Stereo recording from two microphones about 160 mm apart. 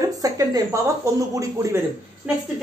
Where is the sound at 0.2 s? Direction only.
25° right (ahead or behind).